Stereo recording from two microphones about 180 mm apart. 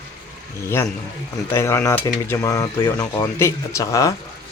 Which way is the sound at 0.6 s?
15° left (ahead or behind).